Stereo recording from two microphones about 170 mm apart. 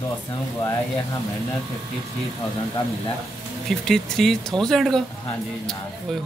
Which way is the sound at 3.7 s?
Centre (ahead or behind).